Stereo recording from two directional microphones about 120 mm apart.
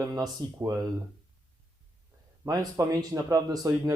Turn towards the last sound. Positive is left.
turn(degrees=-30)  # may be behind; listen again after turning